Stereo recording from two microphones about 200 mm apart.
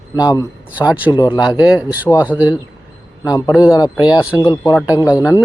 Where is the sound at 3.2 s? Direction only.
20° left (ahead or behind).